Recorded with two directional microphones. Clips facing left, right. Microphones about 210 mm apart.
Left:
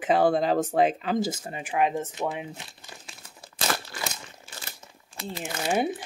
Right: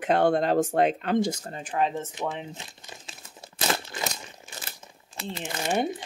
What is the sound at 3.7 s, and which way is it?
Crumpling, 20° right (ahead or behind).